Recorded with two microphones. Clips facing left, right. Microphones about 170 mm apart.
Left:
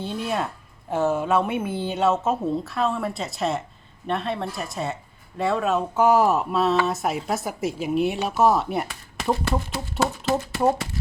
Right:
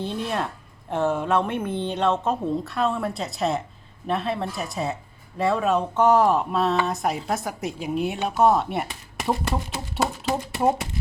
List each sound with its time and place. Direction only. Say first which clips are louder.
0.0 s a woman's voice: even; centre (ahead or behind)
9.1 s a sound: left 1 dB; 10° right (ahead or behind)
10.2 s speech: left 1 dB; 15° right (ahead or behind)